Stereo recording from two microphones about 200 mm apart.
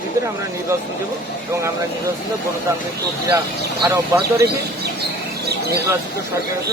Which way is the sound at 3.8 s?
15° right (ahead or behind).